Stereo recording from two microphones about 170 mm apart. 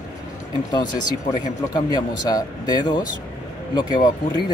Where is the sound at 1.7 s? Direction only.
20° left (ahead or behind).